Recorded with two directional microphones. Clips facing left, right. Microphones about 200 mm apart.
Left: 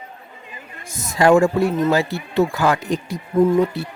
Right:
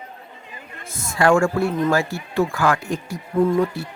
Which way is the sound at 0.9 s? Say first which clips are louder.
Left 3 dB; 20° left (ahead or behind).